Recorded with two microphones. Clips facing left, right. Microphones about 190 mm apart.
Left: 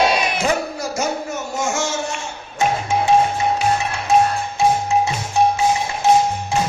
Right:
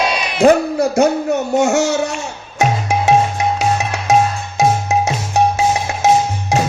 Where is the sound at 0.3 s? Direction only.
60° right (ahead or behind).